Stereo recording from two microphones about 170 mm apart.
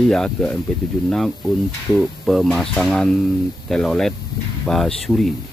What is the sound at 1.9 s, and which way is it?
Speech, centre (ahead or behind).